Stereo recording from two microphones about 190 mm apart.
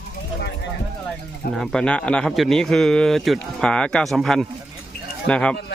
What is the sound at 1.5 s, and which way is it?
Speech, centre (ahead or behind).